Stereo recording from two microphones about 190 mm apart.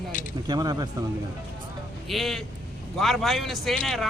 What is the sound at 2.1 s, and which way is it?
Speech, centre (ahead or behind).